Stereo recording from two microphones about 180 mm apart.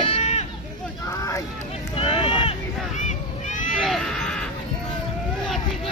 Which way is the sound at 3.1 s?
45° left (ahead or behind).